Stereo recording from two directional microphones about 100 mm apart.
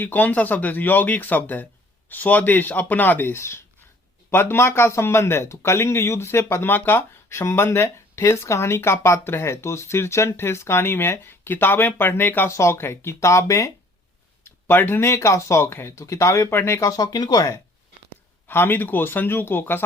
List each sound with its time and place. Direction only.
0.0 s speech: 15° left (ahead or behind)
14.4 s a sound: 20° left (ahead or behind)
15.0 s speech: 30° left (ahead or behind)
17.0 s speech: 40° left (ahead or behind)
18.4 s speech: 20° left (ahead or behind)